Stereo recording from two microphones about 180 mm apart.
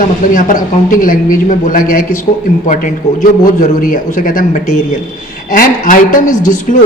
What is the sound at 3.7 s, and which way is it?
A man's voice, 50° left (ahead or behind).